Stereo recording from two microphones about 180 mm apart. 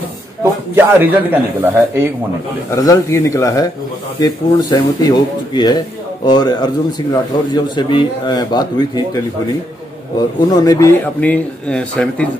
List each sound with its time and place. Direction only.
0.4 s a man's voice: 10° right (ahead or behind)
2.7 s a man's voice: 15° left (ahead or behind)
10.5 s a man's voice: 20° left (ahead or behind)
11.1 s speech: 10° left (ahead or behind)